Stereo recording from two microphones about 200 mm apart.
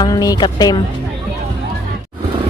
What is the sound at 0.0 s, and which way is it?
Speech, 20° left (ahead or behind).